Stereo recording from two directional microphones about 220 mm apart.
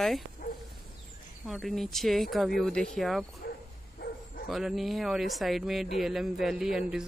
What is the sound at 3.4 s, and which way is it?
Bow-wow, 45° left (ahead or behind).